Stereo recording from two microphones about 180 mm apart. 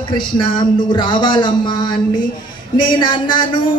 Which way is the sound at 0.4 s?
25° left (ahead or behind).